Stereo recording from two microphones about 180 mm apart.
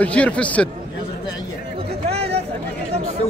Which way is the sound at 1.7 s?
30° right (ahead or behind).